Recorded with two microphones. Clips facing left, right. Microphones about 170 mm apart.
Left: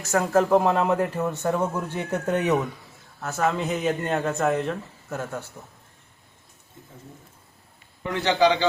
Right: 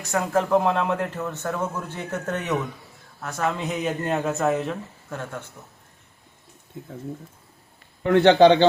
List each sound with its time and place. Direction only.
0.0 s speech: centre (ahead or behind)
8.0 s speech: 60° right (ahead or behind)